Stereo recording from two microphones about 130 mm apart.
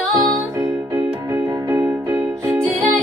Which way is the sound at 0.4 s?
15° right (ahead or behind).